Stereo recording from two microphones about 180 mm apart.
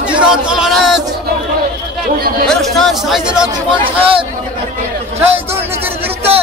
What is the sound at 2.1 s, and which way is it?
Speech, 55° right (ahead or behind).